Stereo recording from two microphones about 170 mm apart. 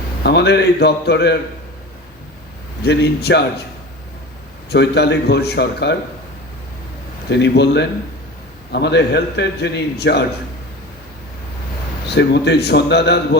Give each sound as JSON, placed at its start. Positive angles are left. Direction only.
{"t": 0.2, "sound": "a man's voice", "side_deg": 75}
{"t": 2.8, "sound": "a man's voice", "side_deg": 75}
{"t": 4.7, "sound": "a man's voice", "side_deg": 75}
{"t": 7.3, "sound": "a man's voice", "side_deg": 80}
{"t": 12.0, "sound": "a man's voice", "side_deg": 80}